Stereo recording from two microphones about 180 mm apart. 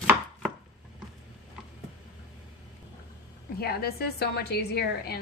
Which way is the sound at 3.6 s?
60° left (ahead or behind).